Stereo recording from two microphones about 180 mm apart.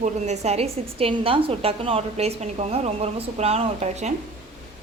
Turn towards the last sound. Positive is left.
turn(degrees=-40)  # may be behind; listen again after turning